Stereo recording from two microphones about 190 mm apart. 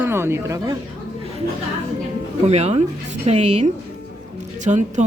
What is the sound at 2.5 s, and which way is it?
Speech, 35° right (ahead or behind).